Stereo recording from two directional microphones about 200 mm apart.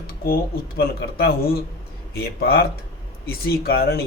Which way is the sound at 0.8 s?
50° left (ahead or behind).